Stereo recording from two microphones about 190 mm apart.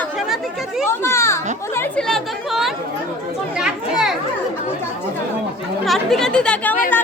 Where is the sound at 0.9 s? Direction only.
15° left (ahead or behind); by 4.1 s 5° right (ahead or behind).